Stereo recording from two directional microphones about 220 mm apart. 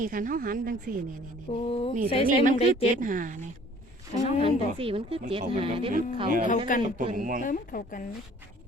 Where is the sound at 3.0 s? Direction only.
35° right (ahead or behind).